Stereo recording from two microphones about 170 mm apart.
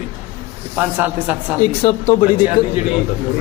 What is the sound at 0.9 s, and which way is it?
Speech, 10° right (ahead or behind).